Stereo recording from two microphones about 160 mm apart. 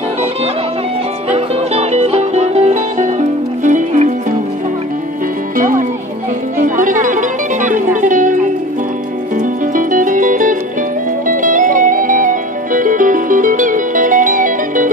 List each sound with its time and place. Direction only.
1.3 s music: 40° right (ahead or behind)
5.6 s music: 55° right (ahead or behind)
9.4 s music: 55° right (ahead or behind)